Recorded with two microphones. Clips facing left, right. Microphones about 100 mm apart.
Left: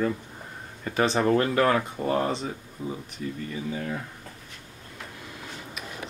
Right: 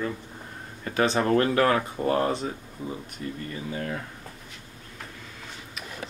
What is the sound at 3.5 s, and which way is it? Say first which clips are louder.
Speech: even; 10° left (ahead or behind).